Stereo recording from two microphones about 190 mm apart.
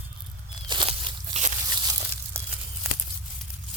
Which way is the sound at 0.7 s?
25° right (ahead or behind).